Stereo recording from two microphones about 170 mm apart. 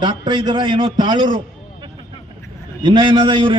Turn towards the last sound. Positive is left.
turn(degrees=-30)  # may be behind; listen again after turning